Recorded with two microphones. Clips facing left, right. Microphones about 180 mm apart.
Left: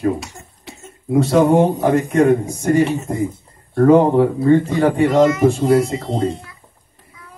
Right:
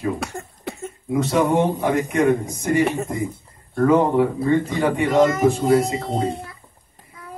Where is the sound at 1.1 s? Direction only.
35° left (ahead or behind).